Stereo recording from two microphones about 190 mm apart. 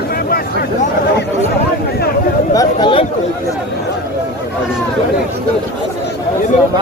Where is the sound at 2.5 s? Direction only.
25° left (ahead or behind).